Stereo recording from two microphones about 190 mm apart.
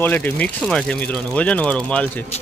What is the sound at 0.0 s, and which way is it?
Speech, 10° left (ahead or behind).